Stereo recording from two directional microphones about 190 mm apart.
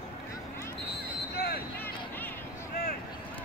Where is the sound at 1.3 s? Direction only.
55° left (ahead or behind).